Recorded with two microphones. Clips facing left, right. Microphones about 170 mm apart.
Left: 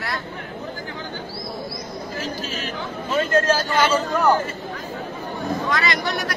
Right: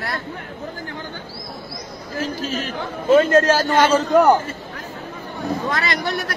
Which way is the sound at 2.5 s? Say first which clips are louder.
Right 3 dB; 55° right (ahead or behind).